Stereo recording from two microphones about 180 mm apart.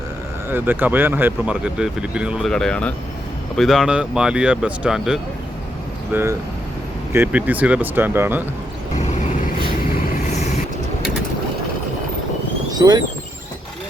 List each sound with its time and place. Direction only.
0.5 s speech: 10° right (ahead or behind)
12.7 s speech: 20° right (ahead or behind)